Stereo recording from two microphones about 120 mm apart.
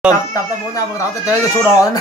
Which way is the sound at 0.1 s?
30° left (ahead or behind).